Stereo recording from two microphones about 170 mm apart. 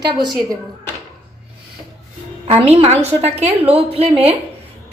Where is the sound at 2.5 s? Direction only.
35° right (ahead or behind).